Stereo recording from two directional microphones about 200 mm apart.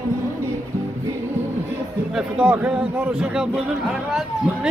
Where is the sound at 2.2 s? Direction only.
5° right (ahead or behind).